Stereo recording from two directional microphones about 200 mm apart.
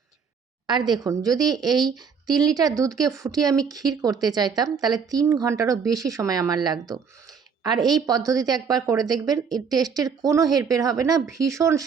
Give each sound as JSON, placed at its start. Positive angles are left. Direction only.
{"t": 0.7, "sound": "a woman's voice", "side_deg": -20}